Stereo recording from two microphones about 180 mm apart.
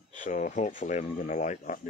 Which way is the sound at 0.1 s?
45° left (ahead or behind).